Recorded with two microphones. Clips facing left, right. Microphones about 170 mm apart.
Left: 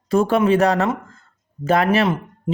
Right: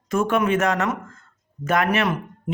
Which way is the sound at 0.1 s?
35° left (ahead or behind).